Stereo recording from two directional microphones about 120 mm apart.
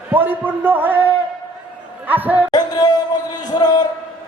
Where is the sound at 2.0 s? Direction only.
15° right (ahead or behind).